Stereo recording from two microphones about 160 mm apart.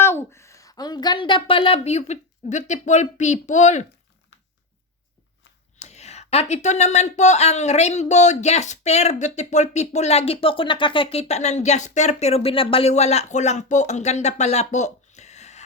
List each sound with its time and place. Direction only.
0.0 s speech: 15° left (ahead or behind); by 3.8 s 45° left (ahead or behind)
5.8 s speech: 45° left (ahead or behind)